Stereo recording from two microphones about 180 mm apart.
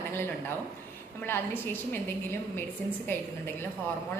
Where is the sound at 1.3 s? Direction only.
10° left (ahead or behind).